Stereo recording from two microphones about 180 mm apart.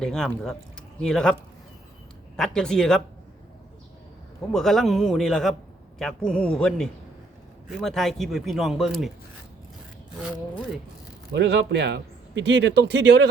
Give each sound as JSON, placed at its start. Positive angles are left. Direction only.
{"t": 0.0, "sound": "speech", "side_deg": 5}
{"t": 4.5, "sound": "speech", "side_deg": 0}
{"t": 10.2, "sound": "speech", "side_deg": 0}
{"t": 11.3, "sound": "a man's voice", "side_deg": -70}